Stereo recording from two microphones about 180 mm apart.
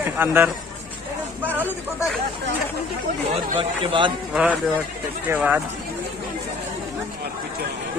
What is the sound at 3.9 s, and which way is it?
Speech, 25° right (ahead or behind).